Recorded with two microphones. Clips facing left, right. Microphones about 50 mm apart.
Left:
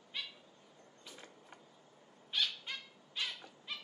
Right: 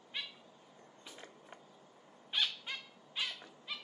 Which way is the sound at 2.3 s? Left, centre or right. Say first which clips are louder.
Right 1 dB; centre.